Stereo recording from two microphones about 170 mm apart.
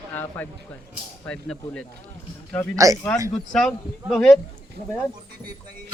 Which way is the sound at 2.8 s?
20° right (ahead or behind).